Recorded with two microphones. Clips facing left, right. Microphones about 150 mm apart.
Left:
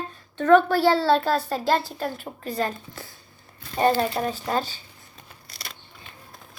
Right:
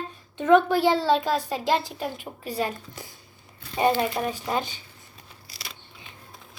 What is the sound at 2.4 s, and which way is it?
Speech, 10° right (ahead or behind).